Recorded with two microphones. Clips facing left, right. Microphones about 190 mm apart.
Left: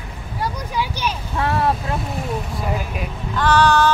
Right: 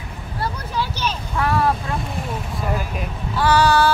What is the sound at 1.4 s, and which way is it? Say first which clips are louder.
Speech: even; 25° left (ahead or behind).